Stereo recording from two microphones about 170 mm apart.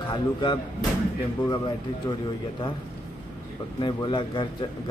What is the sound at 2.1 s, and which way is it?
Speech, 20° left (ahead or behind).